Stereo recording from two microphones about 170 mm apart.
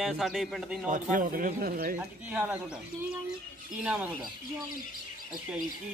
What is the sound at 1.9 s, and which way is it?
Speech, 10° right (ahead or behind).